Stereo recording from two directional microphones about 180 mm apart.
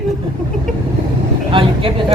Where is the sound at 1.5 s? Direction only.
30° right (ahead or behind).